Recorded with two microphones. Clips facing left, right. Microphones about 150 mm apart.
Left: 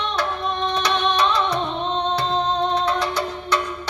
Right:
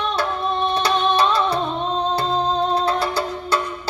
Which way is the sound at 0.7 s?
30° right (ahead or behind).